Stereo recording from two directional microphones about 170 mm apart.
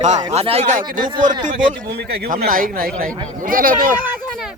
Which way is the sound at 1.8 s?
70° right (ahead or behind).